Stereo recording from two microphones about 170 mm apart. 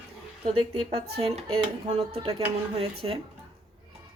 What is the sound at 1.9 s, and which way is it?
Speech, 35° right (ahead or behind).